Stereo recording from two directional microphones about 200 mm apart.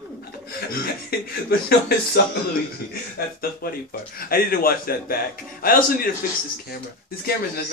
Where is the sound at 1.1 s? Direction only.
50° left (ahead or behind).